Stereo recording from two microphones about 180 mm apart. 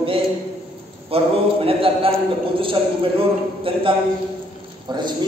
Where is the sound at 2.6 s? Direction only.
30° right (ahead or behind).